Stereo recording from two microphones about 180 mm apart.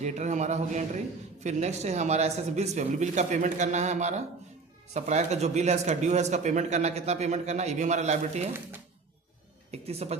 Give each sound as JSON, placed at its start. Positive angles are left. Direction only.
{"t": 0.0, "sound": "speech", "side_deg": -40}
{"t": 9.7, "sound": "speech", "side_deg": -35}